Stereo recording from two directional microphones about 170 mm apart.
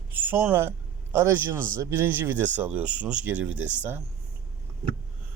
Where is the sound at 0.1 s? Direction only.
10° right (ahead or behind).